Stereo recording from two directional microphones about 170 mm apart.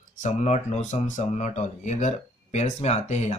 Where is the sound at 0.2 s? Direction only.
45° left (ahead or behind).